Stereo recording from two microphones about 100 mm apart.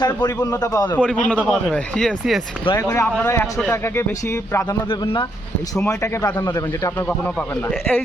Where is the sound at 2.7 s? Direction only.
30° left (ahead or behind).